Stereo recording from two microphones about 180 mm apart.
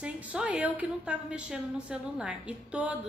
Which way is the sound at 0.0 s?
5° right (ahead or behind).